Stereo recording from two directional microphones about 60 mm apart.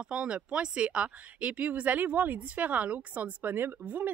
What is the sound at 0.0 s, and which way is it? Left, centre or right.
Speech, centre.